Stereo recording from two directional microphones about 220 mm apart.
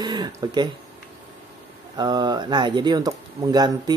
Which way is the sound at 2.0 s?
20° right (ahead or behind).